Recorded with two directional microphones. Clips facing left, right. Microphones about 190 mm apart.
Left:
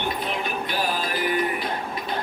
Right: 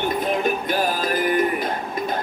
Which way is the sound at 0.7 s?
45° right (ahead or behind).